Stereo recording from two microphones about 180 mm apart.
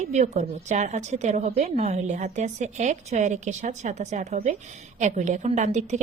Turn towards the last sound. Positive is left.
turn(degrees=-40)  # may be behind; listen again after turning